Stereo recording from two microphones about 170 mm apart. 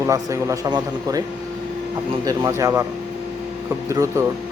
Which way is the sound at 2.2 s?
20° right (ahead or behind).